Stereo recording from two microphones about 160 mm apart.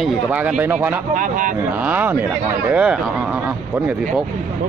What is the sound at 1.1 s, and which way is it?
Speech, 55° right (ahead or behind).